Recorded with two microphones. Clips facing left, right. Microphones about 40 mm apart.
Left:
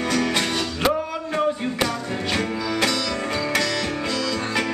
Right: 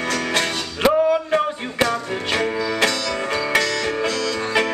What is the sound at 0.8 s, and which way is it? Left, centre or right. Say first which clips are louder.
Music: right 9 dB; centre.